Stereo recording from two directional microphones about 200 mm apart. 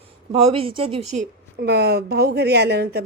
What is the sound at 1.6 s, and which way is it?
A woman's voice, 55° right (ahead or behind).